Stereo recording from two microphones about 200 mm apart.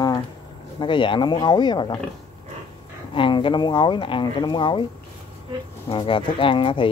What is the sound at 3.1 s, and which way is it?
Speech, 25° left (ahead or behind).